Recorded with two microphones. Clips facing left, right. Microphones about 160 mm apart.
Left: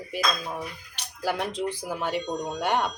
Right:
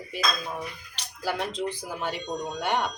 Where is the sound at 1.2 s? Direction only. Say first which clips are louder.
Left 1 dB; 15° left (ahead or behind).